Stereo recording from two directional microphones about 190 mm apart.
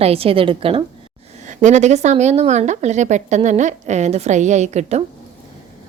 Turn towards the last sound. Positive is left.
turn(degrees=-35)  # may be behind; listen again after turning